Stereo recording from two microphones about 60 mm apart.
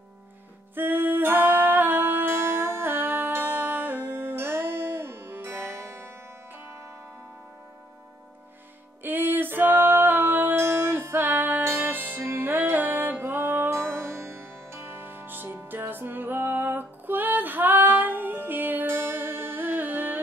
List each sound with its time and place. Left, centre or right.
0.7 s music: right
9.0 s music: right
10.6 s music: right